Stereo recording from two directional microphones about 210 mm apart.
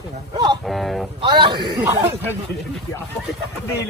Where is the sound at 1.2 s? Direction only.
20° right (ahead or behind).